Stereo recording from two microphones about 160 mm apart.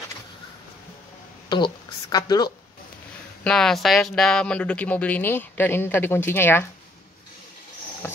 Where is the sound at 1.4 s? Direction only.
25° left (ahead or behind).